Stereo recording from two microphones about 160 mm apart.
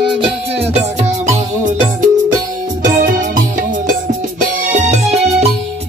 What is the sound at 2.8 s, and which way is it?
Music, 55° right (ahead or behind).